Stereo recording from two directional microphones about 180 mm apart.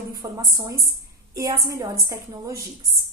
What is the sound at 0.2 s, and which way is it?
A woman's voice, 20° right (ahead or behind).